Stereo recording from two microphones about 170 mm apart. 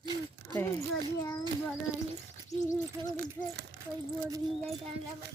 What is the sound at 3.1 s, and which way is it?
Speech, 65° right (ahead or behind).